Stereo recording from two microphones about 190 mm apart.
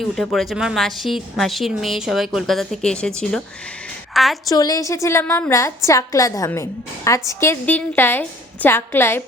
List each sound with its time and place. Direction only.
0.0 s a woman's voice: centre (ahead or behind)
4.4 s a woman's voice: 20° left (ahead or behind)